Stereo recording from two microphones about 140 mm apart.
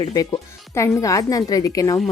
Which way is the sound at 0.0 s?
25° left (ahead or behind).